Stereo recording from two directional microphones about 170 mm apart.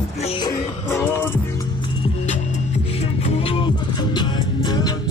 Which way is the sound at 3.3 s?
30° left (ahead or behind).